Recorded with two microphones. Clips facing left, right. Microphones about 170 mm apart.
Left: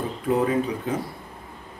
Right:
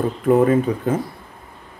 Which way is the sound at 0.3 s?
55° right (ahead or behind).